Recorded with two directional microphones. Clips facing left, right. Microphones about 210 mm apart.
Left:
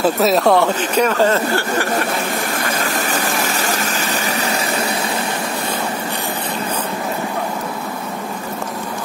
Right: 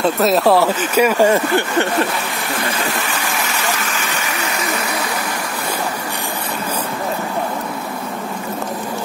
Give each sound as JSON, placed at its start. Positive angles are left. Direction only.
{"t": 0.0, "sound": "speech", "side_deg": 0}
{"t": 2.7, "sound": "engine", "side_deg": 40}
{"t": 3.8, "sound": "a sound", "side_deg": 40}